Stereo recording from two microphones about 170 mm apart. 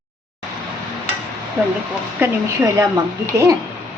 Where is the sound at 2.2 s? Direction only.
20° right (ahead or behind).